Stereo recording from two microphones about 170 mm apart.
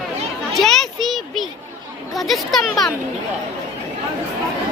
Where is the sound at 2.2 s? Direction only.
Centre (ahead or behind).